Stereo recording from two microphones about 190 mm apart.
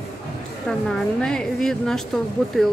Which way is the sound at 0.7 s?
5° left (ahead or behind).